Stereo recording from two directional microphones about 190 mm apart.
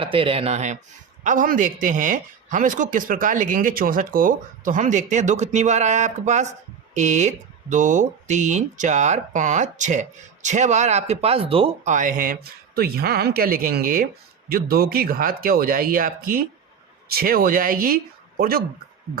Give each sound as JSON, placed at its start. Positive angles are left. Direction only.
{"t": 0.0, "sound": "speech", "side_deg": -30}
{"t": 11.9, "sound": "speech", "side_deg": -45}